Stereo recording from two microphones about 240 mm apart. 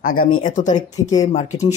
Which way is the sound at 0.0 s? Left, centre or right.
Left.